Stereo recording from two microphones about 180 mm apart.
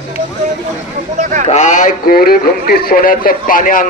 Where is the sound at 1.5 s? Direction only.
40° left (ahead or behind).